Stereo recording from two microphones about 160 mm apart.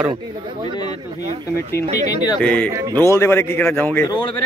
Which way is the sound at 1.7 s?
25° left (ahead or behind).